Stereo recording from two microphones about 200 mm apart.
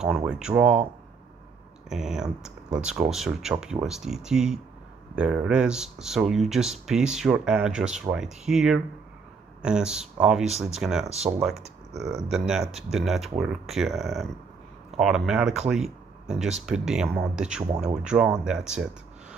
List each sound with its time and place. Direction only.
0.0 s speech: 5° right (ahead or behind)
1.9 s speech: centre (ahead or behind)
11.1 s speech: 30° right (ahead or behind)
11.9 s speech: centre (ahead or behind)